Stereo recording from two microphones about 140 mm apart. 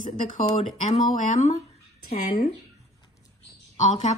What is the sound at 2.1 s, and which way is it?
Speech, 90° left.